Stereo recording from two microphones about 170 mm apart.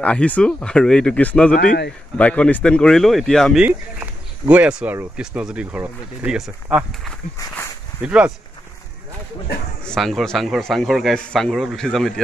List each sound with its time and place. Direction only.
0.0 s speech: 10° left (ahead or behind)
1.5 s a man's voice: 50° left (ahead or behind)
2.1 s a man's voice: 5° left (ahead or behind)
3.6 s a man's voice: 10° right (ahead or behind)
8.0 s a man's voice: 5° right (ahead or behind)
9.8 s a man's voice: centre (ahead or behind)